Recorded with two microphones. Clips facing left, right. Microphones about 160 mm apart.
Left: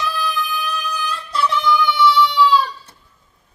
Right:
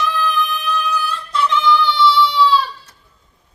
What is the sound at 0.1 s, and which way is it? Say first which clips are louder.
Music: right 3 dB; 10° left (ahead or behind).